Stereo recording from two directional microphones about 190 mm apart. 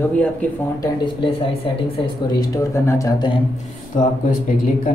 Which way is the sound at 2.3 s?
15° left (ahead or behind).